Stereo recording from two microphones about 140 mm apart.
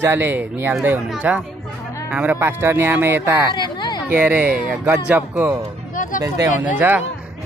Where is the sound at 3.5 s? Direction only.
30° left (ahead or behind).